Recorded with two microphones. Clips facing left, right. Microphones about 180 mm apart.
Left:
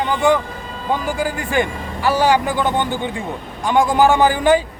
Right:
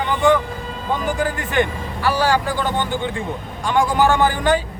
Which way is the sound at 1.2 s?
10° left (ahead or behind).